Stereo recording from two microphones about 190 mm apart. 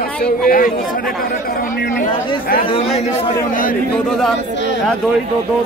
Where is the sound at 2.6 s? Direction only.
30° left (ahead or behind).